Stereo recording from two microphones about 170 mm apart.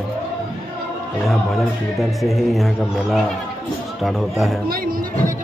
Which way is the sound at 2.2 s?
Centre (ahead or behind).